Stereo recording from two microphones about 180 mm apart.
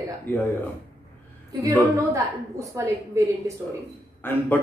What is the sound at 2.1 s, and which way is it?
Speech, 15° right (ahead or behind).